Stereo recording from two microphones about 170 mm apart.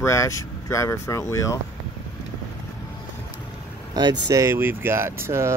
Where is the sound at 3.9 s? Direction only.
20° right (ahead or behind).